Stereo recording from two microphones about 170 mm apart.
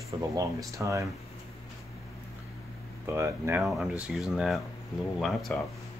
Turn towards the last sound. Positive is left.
turn(degrees=0)  # may be behind; listen again after turning